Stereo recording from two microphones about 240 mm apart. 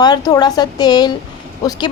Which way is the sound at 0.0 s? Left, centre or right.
Centre.